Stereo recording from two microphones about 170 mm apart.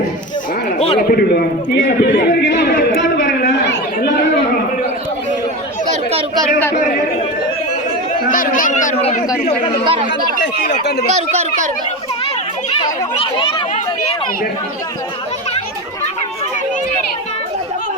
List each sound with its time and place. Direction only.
1.0 s a man's voice: 60° left (ahead or behind); by 3.2 s 90° left
5.9 s chatter: 35° right (ahead or behind)
8.3 s speech: 55° left (ahead or behind)
11.1 s speech: 40° right (ahead or behind)